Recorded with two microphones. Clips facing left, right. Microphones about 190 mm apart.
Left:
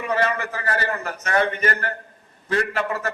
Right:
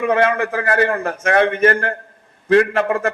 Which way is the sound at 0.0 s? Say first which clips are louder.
Right 7 dB; 55° right (ahead or behind).